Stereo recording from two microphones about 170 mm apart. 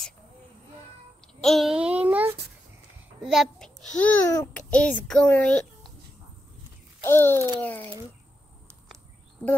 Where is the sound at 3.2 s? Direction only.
Centre (ahead or behind).